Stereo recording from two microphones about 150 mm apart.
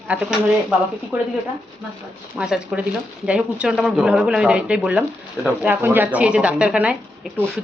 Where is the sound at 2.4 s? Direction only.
5° right (ahead or behind).